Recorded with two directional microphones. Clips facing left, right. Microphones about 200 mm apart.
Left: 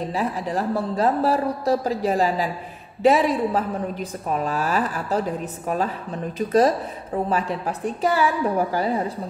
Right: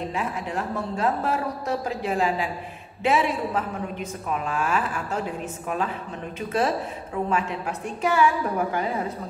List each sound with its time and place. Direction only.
0.1 s a woman's voice: 35° left (ahead or behind)
7.2 s a woman's voice: 35° left (ahead or behind)